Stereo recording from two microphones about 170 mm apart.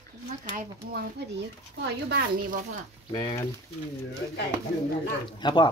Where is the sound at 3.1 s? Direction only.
25° left (ahead or behind).